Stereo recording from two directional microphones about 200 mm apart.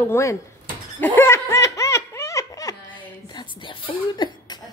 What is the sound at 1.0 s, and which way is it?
Laughter, 10° left (ahead or behind).